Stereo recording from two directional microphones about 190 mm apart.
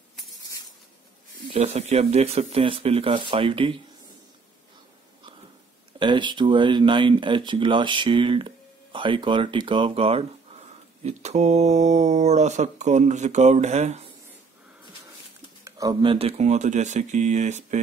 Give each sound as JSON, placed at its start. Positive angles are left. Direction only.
{"t": 1.5, "sound": "speech", "side_deg": -35}
{"t": 5.9, "sound": "speech", "side_deg": -25}
{"t": 15.6, "sound": "speech", "side_deg": -20}